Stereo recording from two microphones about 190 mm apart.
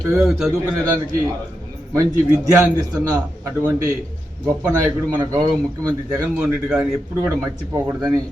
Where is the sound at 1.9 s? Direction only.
15° right (ahead or behind).